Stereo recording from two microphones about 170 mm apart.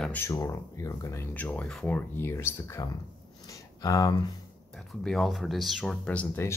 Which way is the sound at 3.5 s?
20° left (ahead or behind).